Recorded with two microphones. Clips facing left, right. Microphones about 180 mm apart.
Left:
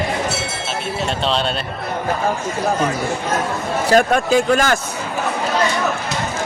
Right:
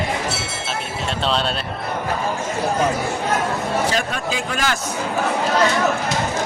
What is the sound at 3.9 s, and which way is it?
Speech, 50° left (ahead or behind).